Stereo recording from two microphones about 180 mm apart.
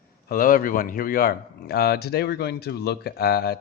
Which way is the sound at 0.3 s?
50° left (ahead or behind).